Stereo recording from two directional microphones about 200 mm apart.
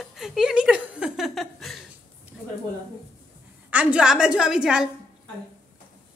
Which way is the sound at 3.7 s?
5° right (ahead or behind).